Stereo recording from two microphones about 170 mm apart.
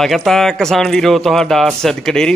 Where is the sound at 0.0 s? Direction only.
Centre (ahead or behind).